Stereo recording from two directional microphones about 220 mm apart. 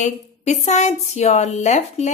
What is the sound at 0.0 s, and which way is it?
A woman's voice, 30° left (ahead or behind).